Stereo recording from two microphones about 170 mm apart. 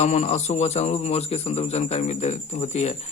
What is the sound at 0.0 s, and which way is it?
Speech, 40° left (ahead or behind).